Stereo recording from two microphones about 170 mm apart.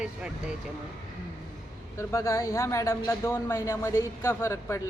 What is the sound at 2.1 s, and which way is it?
A man's voice, 15° left (ahead or behind).